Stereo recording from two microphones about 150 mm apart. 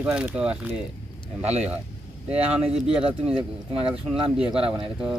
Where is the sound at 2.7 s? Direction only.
5° right (ahead or behind).